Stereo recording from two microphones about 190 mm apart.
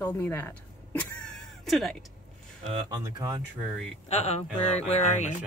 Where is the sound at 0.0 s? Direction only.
10° left (ahead or behind).